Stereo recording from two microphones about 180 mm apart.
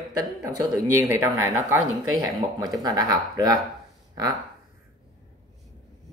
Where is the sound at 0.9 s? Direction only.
15° right (ahead or behind).